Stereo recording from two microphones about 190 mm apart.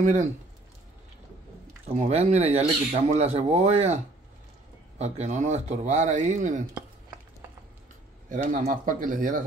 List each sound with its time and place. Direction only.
0.0 s speech: 40° right (ahead or behind)
1.9 s speech: 35° right (ahead or behind)
8.3 s speech: 45° right (ahead or behind)